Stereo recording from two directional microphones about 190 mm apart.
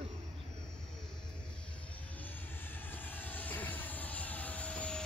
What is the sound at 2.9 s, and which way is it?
Vehicle, 10° left (ahead or behind).